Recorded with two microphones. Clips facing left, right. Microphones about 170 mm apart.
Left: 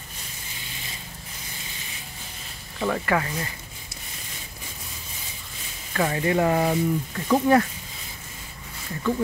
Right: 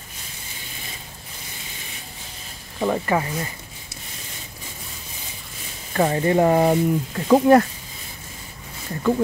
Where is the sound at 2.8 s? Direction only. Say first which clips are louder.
Right 3 dB; 20° right (ahead or behind).